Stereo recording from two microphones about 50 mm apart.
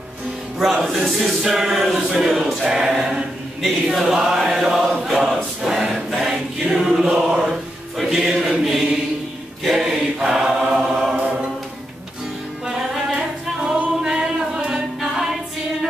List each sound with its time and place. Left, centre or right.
0.6 s chant: centre
2.2 s choir: centre
3.6 s chant: centre
5.6 s choir: centre
7.2 s mantra: centre
8.0 s chant: centre
9.8 s choir: centre
10.7 s chant: centre
12.6 s a capella: centre
14.0 s music: centre
15.0 s a capella: centre